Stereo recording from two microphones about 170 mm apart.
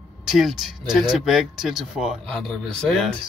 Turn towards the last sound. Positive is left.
turn(degrees=0)  # may be behind; listen again after turning